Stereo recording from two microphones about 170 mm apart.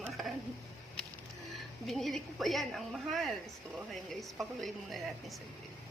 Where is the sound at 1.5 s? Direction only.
Centre (ahead or behind).